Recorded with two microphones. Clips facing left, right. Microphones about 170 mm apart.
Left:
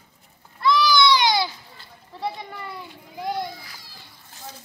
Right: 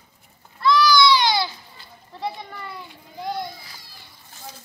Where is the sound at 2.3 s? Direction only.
5° left (ahead or behind).